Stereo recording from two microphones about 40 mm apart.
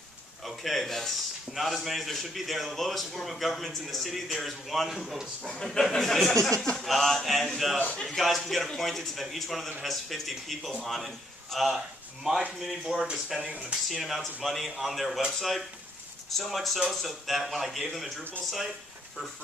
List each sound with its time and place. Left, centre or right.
0.5 s a man's voice: centre
0.8 s speech: centre
1.5 s a man's voice: centre
5.6 s a man's voice: centre
13.0 s speech: centre
14.0 s a man's voice: centre